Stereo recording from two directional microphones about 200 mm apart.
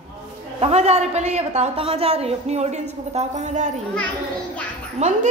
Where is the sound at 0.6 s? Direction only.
30° right (ahead or behind).